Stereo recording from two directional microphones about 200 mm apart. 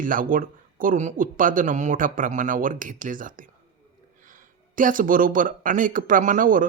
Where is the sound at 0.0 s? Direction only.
45° right (ahead or behind).